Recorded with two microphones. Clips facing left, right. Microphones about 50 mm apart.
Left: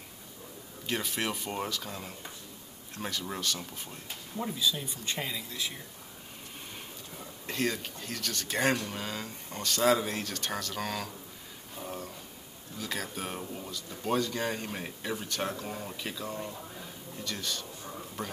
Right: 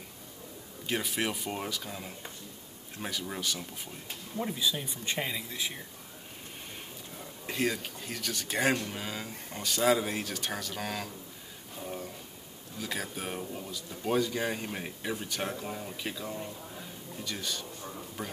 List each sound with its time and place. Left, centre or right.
0.8 s speech: centre
4.5 s speech: right
7.4 s speech: centre
12.7 s speech: centre
17.9 s a sound: centre